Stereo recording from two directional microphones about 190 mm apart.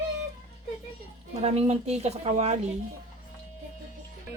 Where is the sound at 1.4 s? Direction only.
35° right (ahead or behind).